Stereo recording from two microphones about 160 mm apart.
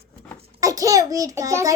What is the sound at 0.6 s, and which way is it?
A child's voice, 20° right (ahead or behind).